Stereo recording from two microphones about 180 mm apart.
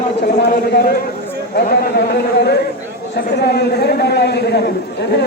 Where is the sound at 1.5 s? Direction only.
60° left (ahead or behind).